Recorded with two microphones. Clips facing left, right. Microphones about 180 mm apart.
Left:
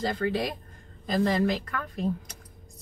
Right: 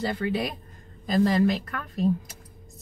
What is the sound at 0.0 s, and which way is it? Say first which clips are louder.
Speech: even; 10° right (ahead or behind).